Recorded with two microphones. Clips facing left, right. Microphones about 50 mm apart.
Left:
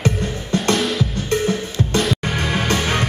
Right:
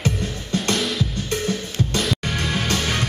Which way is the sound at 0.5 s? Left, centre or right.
Centre.